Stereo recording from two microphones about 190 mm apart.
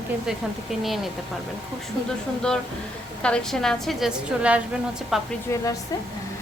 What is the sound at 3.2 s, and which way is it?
A woman's voice, 5° left (ahead or behind).